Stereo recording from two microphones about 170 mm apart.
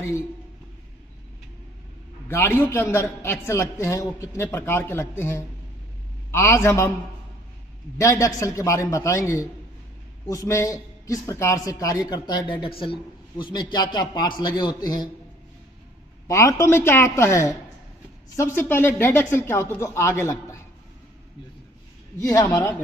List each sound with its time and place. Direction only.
2.2 s a man's voice: 15° left (ahead or behind)
8.0 s a man's voice: 20° left (ahead or behind)
16.3 s a man's voice: 20° left (ahead or behind)
22.2 s a man's voice: 20° left (ahead or behind)